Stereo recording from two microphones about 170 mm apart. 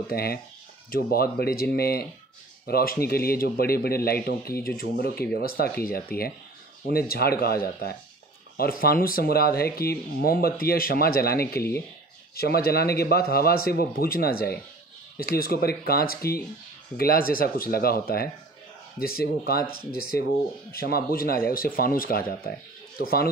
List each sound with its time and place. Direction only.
0.1 s a man's voice: 65° left (ahead or behind)